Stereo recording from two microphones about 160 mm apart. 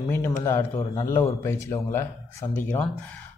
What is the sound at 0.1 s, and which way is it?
A man's voice, 15° left (ahead or behind).